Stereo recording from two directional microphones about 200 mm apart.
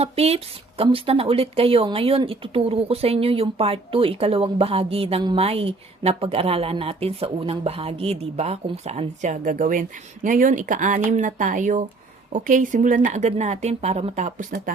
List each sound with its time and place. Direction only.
0.0 s speech: 30° right (ahead or behind)